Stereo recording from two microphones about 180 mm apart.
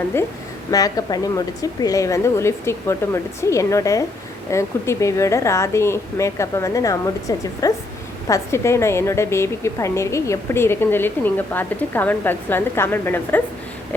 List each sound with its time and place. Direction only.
0.7 s a woman's voice: 20° left (ahead or behind)